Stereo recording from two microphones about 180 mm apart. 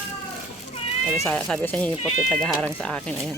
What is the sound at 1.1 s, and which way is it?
Speech, 15° left (ahead or behind).